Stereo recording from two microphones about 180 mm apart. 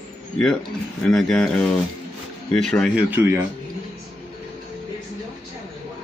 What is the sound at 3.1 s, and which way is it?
Speech, 10° right (ahead or behind).